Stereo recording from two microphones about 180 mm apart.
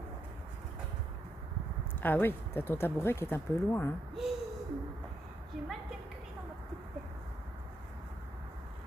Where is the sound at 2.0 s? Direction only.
10° left (ahead or behind).